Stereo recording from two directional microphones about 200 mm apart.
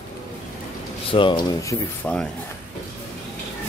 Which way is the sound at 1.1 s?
25° left (ahead or behind).